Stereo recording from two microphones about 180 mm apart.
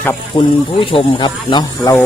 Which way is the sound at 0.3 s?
30° left (ahead or behind).